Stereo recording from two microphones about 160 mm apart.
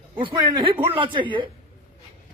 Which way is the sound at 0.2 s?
30° right (ahead or behind).